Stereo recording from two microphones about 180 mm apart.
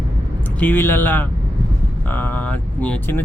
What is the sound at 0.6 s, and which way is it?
Speech, 10° left (ahead or behind).